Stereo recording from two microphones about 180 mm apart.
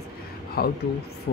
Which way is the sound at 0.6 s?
60° left (ahead or behind).